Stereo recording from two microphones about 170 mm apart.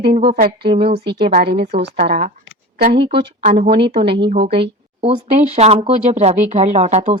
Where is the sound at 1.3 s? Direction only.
65° right (ahead or behind).